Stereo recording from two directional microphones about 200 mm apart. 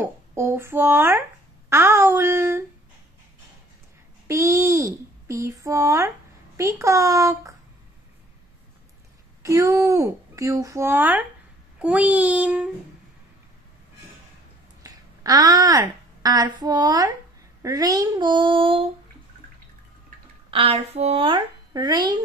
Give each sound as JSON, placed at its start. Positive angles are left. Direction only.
{"t": 0.0, "sound": "speech", "side_deg": -10}
{"t": 4.3, "sound": "a child's voice", "side_deg": -15}
{"t": 9.4, "sound": "speech", "side_deg": -15}
{"t": 14.8, "sound": "a woman's voice", "side_deg": -20}
{"t": 20.5, "sound": "a child's voice", "side_deg": -30}